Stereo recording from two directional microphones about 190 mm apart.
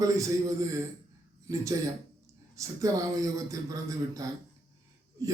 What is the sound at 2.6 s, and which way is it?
A man's voice, 15° right (ahead or behind).